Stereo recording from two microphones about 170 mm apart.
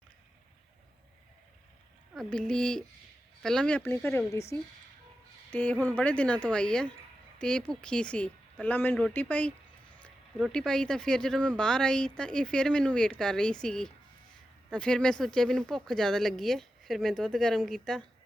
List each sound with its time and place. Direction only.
2.1 s speech: 5° left (ahead or behind)